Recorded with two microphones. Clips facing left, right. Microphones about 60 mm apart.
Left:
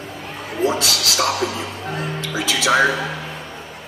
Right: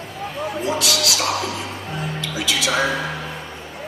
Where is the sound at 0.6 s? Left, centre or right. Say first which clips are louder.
Left 3 dB; left.